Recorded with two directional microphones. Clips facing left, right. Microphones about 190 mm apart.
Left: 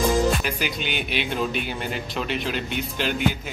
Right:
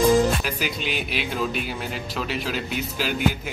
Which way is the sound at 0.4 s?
Centre (ahead or behind).